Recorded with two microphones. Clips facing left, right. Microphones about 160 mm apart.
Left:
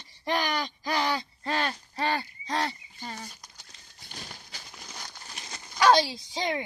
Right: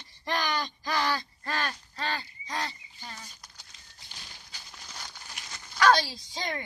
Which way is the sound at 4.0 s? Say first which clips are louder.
Left 7 dB; 55° left (ahead or behind).